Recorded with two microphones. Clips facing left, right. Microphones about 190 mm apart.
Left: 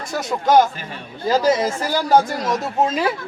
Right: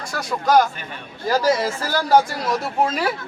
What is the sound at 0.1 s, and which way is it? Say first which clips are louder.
Speech: left 2 dB; 20° left (ahead or behind).